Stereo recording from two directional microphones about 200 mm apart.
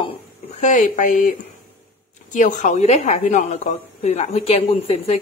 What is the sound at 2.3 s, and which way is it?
Speech, 35° left (ahead or behind).